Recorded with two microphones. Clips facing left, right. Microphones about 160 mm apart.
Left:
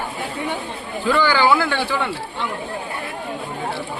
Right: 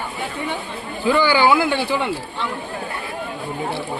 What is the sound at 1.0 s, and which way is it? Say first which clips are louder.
Speech: right 1 dB; 10° right (ahead or behind).